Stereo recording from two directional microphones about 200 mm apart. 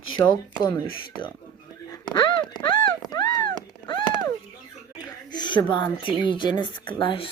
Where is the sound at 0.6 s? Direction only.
25° left (ahead or behind).